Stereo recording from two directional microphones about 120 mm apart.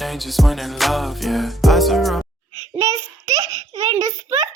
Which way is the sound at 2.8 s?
25° right (ahead or behind).